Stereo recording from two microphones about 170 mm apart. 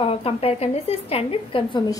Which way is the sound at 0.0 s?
35° left (ahead or behind).